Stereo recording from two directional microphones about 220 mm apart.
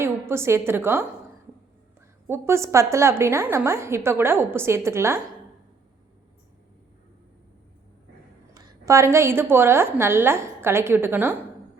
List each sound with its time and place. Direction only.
0.0 s a woman's voice: 10° right (ahead or behind)
2.2 s a woman's voice: 10° right (ahead or behind)
8.5 s a woman's voice: 15° right (ahead or behind)